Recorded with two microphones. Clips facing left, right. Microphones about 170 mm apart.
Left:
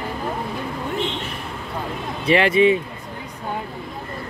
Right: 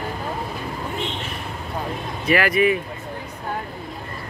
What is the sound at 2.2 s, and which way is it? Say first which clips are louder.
Speech: left 3 dB; 25° left (ahead or behind).